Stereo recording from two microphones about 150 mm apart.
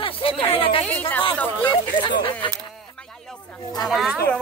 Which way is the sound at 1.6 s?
35° left (ahead or behind).